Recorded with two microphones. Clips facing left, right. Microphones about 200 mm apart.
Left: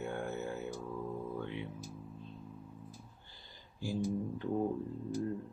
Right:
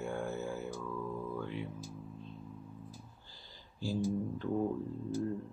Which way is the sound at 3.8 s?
20° left (ahead or behind).